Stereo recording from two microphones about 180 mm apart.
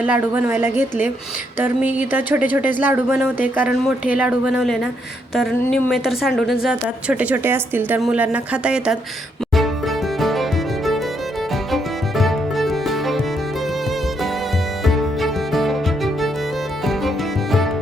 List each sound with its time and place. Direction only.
0.0 s speech: 10° right (ahead or behind)
9.6 s music: centre (ahead or behind)
14.8 s music: centre (ahead or behind)